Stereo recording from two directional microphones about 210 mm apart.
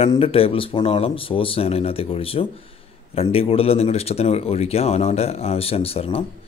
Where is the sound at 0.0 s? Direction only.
25° left (ahead or behind).